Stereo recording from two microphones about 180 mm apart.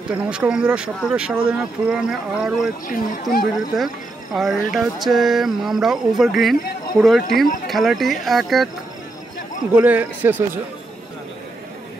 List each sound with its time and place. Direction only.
0.1 s speech: 5° right (ahead or behind)
3.1 s speech: 50° left (ahead or behind)
3.7 s speech: centre (ahead or behind)
9.8 s a man's voice: 10° right (ahead or behind)